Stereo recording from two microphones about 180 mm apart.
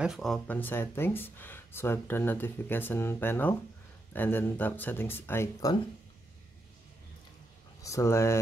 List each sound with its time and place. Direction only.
0.0 s speech: centre (ahead or behind); by 5.8 s 15° left (ahead or behind)
7.8 s speech: 15° left (ahead or behind)